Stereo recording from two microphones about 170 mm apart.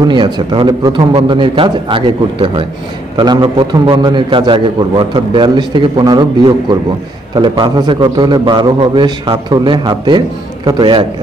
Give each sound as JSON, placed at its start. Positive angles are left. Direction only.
{"t": 0.0, "sound": "a man's voice", "side_deg": -25}